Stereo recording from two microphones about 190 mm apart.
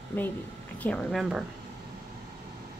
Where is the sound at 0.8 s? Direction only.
5° left (ahead or behind).